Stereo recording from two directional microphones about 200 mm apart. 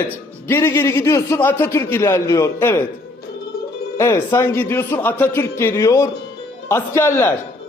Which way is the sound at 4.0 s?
15° left (ahead or behind).